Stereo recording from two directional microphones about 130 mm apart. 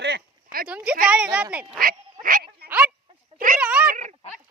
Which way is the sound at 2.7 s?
10° right (ahead or behind).